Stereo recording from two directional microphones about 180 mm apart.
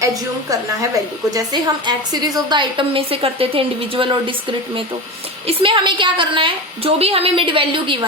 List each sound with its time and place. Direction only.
0.0 s a woman's voice: 20° right (ahead or behind)